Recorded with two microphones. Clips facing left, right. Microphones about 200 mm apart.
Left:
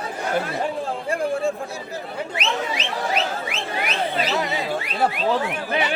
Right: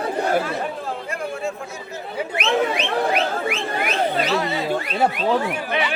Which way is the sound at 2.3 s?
60° right (ahead or behind).